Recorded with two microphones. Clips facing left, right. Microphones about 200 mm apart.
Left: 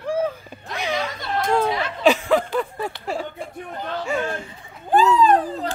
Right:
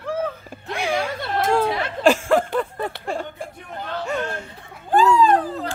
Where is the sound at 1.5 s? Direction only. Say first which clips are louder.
Left 1 dB; 5° right (ahead or behind).